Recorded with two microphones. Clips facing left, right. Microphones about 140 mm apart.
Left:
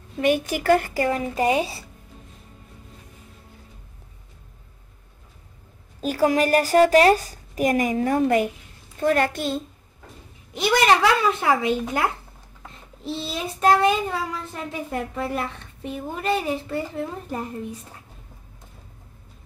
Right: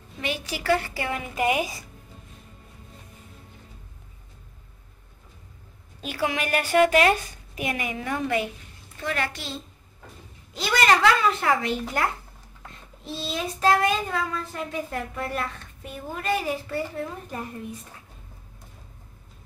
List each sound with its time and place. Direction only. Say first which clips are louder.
0.2 s a woman's voice: left 10 dB; 50° left (ahead or behind); by 1.9 s 30° left (ahead or behind)
5.9 s a woman's voice: left 8 dB; 40° left (ahead or behind)
10.5 s a woman's voice: left 3 dB; 20° left (ahead or behind)
13.0 s child singing: left 2 dB; 20° left (ahead or behind)